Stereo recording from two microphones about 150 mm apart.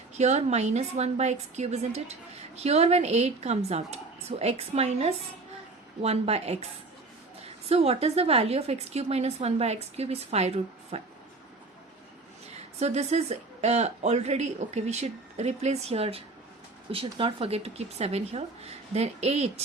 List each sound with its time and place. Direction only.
0.2 s speech: 50° right (ahead or behind)
7.7 s speech: 40° right (ahead or behind)
12.8 s speech: 45° right (ahead or behind)